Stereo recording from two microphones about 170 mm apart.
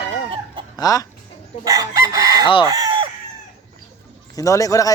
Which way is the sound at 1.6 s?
20° right (ahead or behind).